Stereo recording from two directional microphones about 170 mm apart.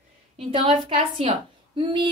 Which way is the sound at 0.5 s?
35° right (ahead or behind).